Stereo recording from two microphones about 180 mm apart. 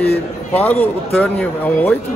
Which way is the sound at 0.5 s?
10° left (ahead or behind).